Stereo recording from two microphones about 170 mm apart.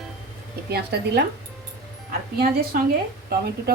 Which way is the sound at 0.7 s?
75° right (ahead or behind).